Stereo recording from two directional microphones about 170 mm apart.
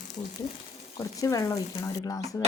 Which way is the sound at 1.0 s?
20° left (ahead or behind).